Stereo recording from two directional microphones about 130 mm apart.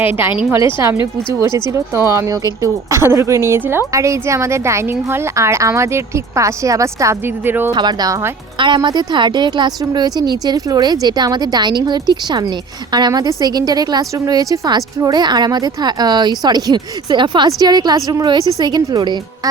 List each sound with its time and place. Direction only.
0.0 s speech: 15° right (ahead or behind)
7.7 s a woman's voice: 30° right (ahead or behind)
8.5 s a woman's voice: 40° right (ahead or behind)